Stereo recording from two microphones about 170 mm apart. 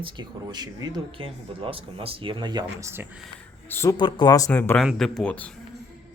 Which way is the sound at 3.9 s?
30° left (ahead or behind).